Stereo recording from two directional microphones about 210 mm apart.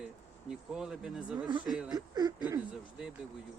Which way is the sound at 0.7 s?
5° right (ahead or behind).